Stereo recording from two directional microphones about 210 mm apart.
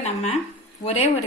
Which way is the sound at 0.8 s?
30° left (ahead or behind).